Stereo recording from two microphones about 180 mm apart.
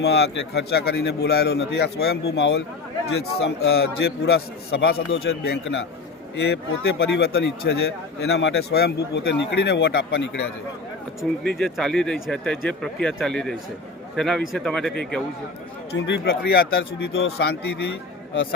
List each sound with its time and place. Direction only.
0.0 s a man's voice: 65° left (ahead or behind)
6.4 s a man's voice: 65° left (ahead or behind)
11.4 s speech: 5° left (ahead or behind)
15.9 s a man's voice: 70° left (ahead or behind)